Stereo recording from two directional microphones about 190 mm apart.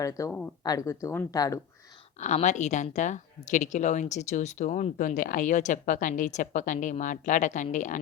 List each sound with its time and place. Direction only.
0.0 s speech: 15° left (ahead or behind)
2.1 s a woman's voice: 40° left (ahead or behind)